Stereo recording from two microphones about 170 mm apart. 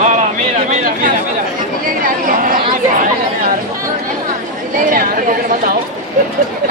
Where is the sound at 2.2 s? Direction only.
55° right (ahead or behind).